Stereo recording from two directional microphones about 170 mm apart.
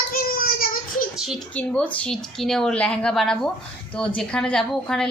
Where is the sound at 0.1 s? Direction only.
60° left (ahead or behind).